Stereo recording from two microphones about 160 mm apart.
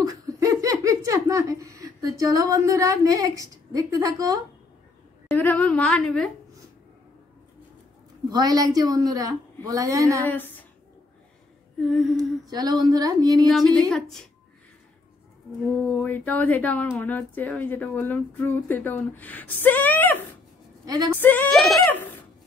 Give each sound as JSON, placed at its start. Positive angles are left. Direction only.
{"t": 0.0, "sound": "speech", "side_deg": -20}
{"t": 5.3, "sound": "speech", "side_deg": 10}
{"t": 8.3, "sound": "a woman's voice", "side_deg": -25}
{"t": 10.2, "sound": "speech", "side_deg": 10}
{"t": 11.8, "sound": "humming", "side_deg": 0}
{"t": 12.4, "sound": "a woman's voice", "side_deg": -25}
{"t": 13.7, "sound": "humming", "side_deg": 5}
{"t": 15.9, "sound": "speech", "side_deg": 10}
{"t": 20.8, "sound": "a woman's voice", "side_deg": -25}
{"t": 21.2, "sound": "speech", "side_deg": 10}
{"t": 21.5, "sound": "humming", "side_deg": 0}